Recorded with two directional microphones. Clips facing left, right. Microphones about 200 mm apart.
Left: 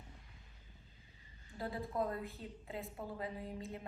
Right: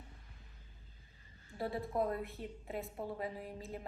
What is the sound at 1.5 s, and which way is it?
A woman's voice, 25° right (ahead or behind).